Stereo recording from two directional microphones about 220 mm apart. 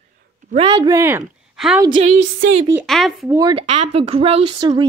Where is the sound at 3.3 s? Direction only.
20° right (ahead or behind).